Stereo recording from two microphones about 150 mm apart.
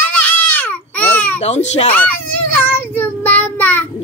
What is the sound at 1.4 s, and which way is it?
Speech, 50° left (ahead or behind).